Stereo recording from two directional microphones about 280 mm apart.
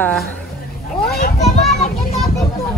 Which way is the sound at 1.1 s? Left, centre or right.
Left.